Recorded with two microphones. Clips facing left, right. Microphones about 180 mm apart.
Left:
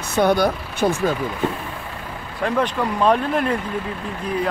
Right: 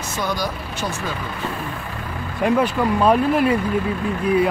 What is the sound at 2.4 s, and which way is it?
Speech, 10° right (ahead or behind).